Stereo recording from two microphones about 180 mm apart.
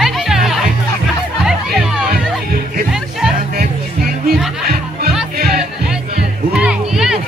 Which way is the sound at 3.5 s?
55° right (ahead or behind).